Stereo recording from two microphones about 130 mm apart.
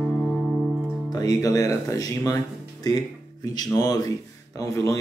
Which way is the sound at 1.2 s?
25° left (ahead or behind).